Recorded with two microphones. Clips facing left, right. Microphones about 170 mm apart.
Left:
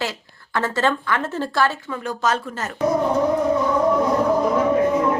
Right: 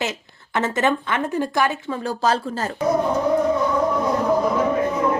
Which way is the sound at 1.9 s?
30° right (ahead or behind).